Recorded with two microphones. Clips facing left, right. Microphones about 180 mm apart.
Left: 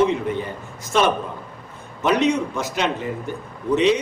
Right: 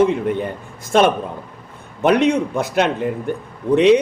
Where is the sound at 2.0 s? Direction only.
55° right (ahead or behind).